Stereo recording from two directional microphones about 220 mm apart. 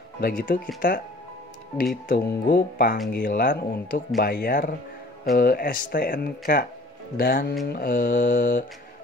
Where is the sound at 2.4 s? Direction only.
40° left (ahead or behind).